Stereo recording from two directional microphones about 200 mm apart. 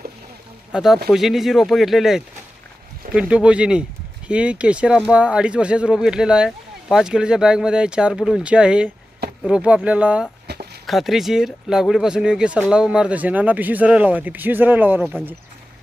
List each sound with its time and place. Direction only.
0.7 s speech: centre (ahead or behind)
10.4 s a sound: 55° right (ahead or behind)
10.8 s speech: centre (ahead or behind)